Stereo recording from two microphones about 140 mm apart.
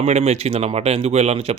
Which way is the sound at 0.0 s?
50° right (ahead or behind).